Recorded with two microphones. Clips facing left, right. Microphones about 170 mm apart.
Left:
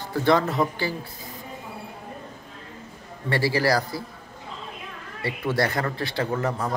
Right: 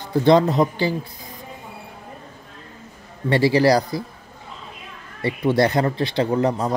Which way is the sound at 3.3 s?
20° right (ahead or behind).